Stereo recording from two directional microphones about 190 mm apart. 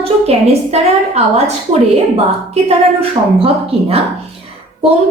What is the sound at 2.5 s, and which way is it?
A woman's voice, 30° right (ahead or behind).